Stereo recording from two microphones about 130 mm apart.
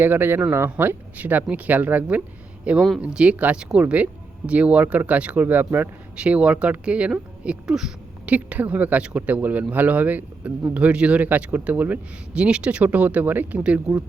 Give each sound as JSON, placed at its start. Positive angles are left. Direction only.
{"t": 0.0, "sound": "speech", "side_deg": -15}